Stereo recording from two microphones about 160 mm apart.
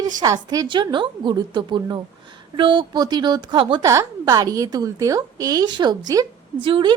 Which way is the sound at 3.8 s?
20° right (ahead or behind).